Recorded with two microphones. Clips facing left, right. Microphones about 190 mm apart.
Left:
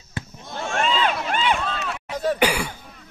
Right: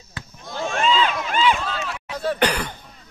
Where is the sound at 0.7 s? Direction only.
50° left (ahead or behind).